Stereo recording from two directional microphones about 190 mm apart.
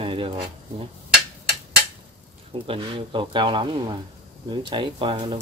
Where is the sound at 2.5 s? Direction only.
25° right (ahead or behind).